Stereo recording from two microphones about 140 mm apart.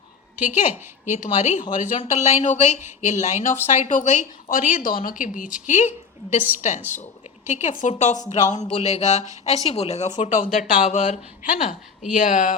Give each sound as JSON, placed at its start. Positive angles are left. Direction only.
{"t": 0.3, "sound": "a woman's voice", "side_deg": -15}
{"t": 1.1, "sound": "a woman's voice", "side_deg": 60}
{"t": 4.7, "sound": "a woman's voice", "side_deg": 85}
{"t": 10.9, "sound": "a woman's voice", "side_deg": 60}